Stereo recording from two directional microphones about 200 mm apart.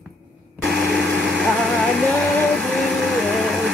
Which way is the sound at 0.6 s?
Centre (ahead or behind).